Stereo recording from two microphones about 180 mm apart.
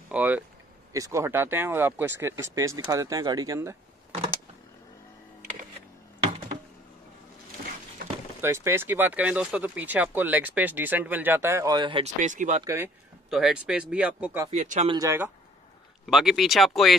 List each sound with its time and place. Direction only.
0.1 s speech: 10° right (ahead or behind)
8.4 s speech: 15° right (ahead or behind)
12.2 s speech: 45° right (ahead or behind)
12.6 s speech: 15° right (ahead or behind)
13.3 s speech: 5° right (ahead or behind)
14.5 s speech: 40° right (ahead or behind)
14.9 s speech: 15° right (ahead or behind)
16.1 s speech: centre (ahead or behind)